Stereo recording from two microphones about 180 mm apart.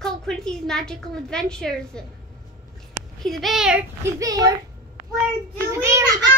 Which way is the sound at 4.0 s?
20° right (ahead or behind).